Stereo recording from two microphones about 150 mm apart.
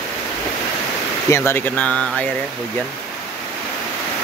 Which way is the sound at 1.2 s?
15° left (ahead or behind).